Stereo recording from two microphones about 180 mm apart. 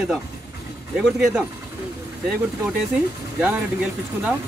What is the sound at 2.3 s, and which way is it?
Speech, 5° right (ahead or behind).